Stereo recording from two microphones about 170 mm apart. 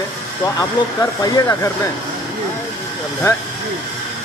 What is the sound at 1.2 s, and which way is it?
Speech, 20° left (ahead or behind).